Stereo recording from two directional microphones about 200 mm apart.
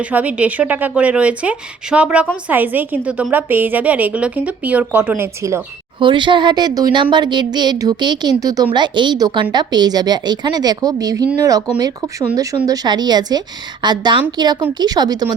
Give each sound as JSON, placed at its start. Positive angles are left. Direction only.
{"t": 0.0, "sound": "a woman's voice", "side_deg": -5}
{"t": 12.4, "sound": "a woman's voice", "side_deg": -15}